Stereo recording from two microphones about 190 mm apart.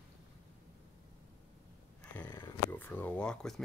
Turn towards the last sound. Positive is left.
turn(degrees=5)  # may be behind; listen again after turning